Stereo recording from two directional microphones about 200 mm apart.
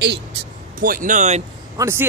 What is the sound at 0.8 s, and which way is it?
Speech, 40° right (ahead or behind).